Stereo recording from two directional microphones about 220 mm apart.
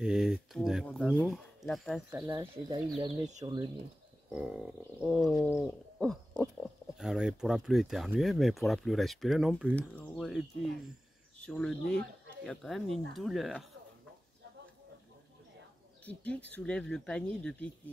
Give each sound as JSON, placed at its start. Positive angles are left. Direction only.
{"t": 0.0, "sound": "speech", "side_deg": 0}
{"t": 2.0, "sound": "speech", "side_deg": -10}
{"t": 3.0, "sound": "speech", "side_deg": -30}
{"t": 3.4, "sound": "speech", "side_deg": -20}
{"t": 4.3, "sound": "speech", "side_deg": -5}
{"t": 5.3, "sound": "bird", "side_deg": 15}
{"t": 5.9, "sound": "speech", "side_deg": 0}
{"t": 16.1, "sound": "speech", "side_deg": 5}